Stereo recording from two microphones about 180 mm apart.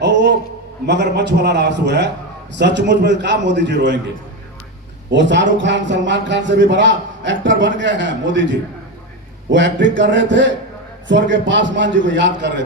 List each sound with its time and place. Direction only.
0.0 s a sound: 75° right (ahead or behind)
0.9 s a man's voice: 70° right (ahead or behind)
5.1 s a man's voice: 90° right